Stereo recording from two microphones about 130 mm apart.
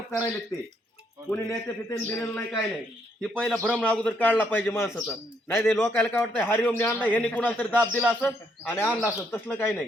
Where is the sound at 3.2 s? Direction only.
5° left (ahead or behind).